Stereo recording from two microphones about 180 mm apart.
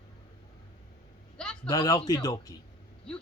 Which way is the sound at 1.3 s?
5° left (ahead or behind).